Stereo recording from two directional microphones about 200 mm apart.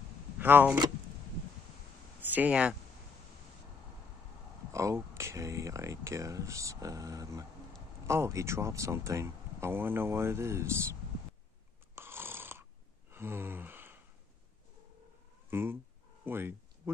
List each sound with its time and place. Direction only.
0.4 s speech: 10° right (ahead or behind)
2.3 s speech: 5° right (ahead or behind)
4.7 s speech: 15° right (ahead or behind)
11.9 s snoring: 10° right (ahead or behind)
13.1 s gasp: 10° right (ahead or behind)
15.5 s speech: 10° right (ahead or behind)
16.3 s a sound: 10° right (ahead or behind)